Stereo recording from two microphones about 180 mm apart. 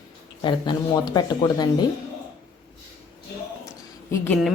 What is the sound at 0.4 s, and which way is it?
Speech, 25° left (ahead or behind).